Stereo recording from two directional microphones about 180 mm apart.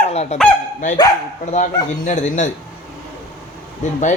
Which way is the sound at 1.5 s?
40° left (ahead or behind).